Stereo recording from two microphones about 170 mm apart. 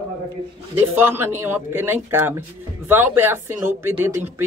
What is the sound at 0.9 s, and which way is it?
Speech, 15° right (ahead or behind).